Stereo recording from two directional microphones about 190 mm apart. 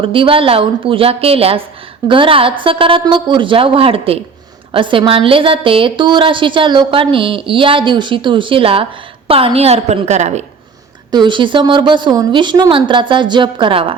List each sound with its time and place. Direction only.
0.0 s a woman's voice: 30° right (ahead or behind)
11.1 s a woman's voice: 25° right (ahead or behind)